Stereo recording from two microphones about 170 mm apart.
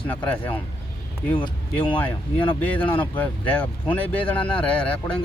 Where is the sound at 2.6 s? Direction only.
10° left (ahead or behind).